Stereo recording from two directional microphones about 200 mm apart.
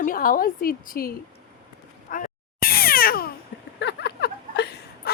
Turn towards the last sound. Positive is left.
turn(degrees=55)  # may be behind; listen again after turning